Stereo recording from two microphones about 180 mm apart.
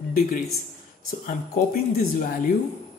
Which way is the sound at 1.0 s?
50° left (ahead or behind).